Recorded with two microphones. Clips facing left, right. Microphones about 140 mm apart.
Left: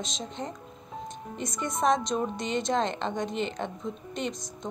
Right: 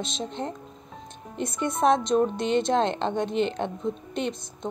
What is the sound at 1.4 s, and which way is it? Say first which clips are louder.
Speech: right 5 dB; 60° right (ahead or behind).